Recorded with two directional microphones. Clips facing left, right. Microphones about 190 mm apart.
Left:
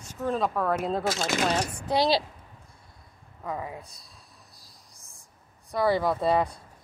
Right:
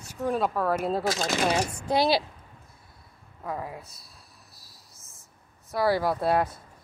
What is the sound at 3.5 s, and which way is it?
Speech, 5° right (ahead or behind).